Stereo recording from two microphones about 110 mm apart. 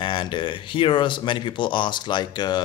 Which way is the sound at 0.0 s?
45° left (ahead or behind).